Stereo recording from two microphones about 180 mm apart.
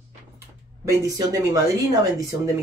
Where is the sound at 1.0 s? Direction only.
20° right (ahead or behind).